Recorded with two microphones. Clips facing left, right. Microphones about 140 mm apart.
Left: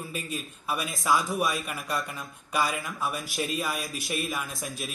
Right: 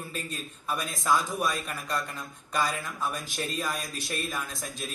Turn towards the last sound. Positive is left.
turn(degrees=5)  # may be behind; listen again after turning